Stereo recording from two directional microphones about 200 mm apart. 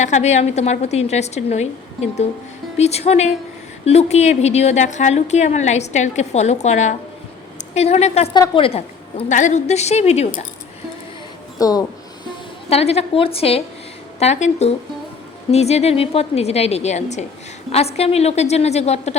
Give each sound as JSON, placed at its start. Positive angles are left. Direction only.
{"t": 0.0, "sound": "a woman's voice", "side_deg": 35}
{"t": 11.6, "sound": "a sound", "side_deg": 20}
{"t": 12.7, "sound": "a woman's voice", "side_deg": 30}